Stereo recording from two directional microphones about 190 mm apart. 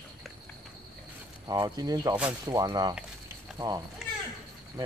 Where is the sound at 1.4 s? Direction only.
20° right (ahead or behind).